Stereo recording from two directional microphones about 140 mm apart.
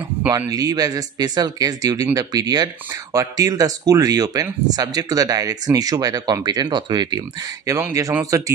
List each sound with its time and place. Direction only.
0.5 s speech: 25° right (ahead or behind)